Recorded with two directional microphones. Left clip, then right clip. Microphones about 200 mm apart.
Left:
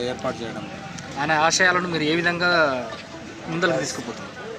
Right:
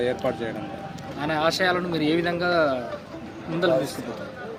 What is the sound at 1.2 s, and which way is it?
Speech, 20° left (ahead or behind).